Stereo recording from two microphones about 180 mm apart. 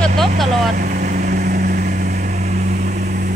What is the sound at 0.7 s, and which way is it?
Vehicle, 50° right (ahead or behind).